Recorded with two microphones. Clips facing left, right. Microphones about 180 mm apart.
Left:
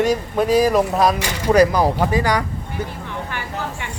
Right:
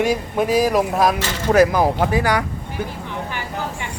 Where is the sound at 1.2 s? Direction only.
10° left (ahead or behind).